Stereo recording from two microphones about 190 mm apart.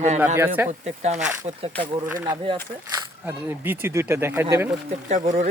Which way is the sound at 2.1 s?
10° right (ahead or behind).